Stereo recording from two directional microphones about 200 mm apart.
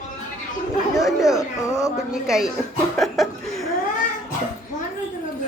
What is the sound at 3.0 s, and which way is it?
Chuckle, centre (ahead or behind).